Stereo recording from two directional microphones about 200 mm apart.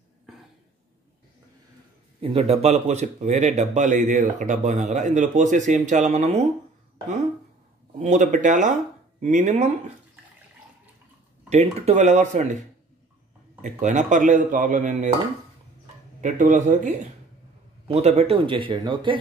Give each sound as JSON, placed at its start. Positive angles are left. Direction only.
{"t": 2.1, "sound": "speech", "side_deg": -30}
{"t": 8.0, "sound": "speech", "side_deg": -40}
{"t": 11.4, "sound": "speech", "side_deg": -35}
{"t": 16.2, "sound": "a man's voice", "side_deg": -40}